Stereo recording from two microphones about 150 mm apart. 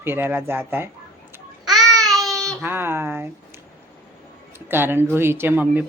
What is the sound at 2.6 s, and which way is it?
Speech, 15° right (ahead or behind).